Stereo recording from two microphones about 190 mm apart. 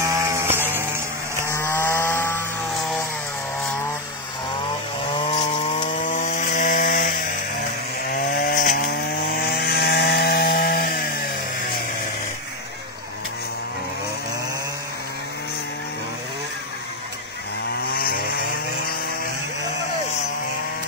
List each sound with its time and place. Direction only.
0.0 s sheep: 20° right (ahead or behind)
1.5 s chainsaw: 10° left (ahead or behind)
5.9 s chainsaw: 40° left (ahead or behind)
8.1 s chainsaw: 50° left (ahead or behind)
17.8 s chainsaw: 55° left (ahead or behind)